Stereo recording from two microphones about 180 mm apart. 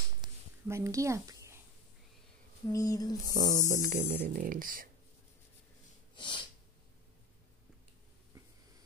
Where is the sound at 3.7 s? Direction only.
45° right (ahead or behind).